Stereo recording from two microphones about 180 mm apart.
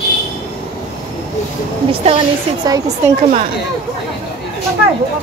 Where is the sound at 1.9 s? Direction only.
30° right (ahead or behind).